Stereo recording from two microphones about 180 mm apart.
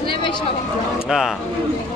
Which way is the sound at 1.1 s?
5° right (ahead or behind).